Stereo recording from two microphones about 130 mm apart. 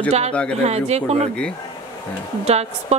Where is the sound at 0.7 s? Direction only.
55° right (ahead or behind).